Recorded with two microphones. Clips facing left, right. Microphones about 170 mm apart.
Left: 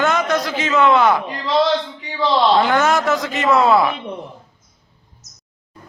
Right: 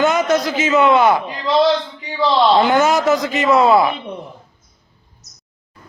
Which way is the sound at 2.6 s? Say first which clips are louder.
Right 2 dB; 5° right (ahead or behind).